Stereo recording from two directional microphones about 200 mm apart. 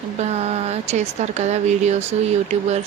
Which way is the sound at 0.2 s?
30° right (ahead or behind).